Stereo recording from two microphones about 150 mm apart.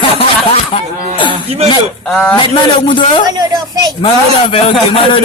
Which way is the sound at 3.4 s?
25° right (ahead or behind).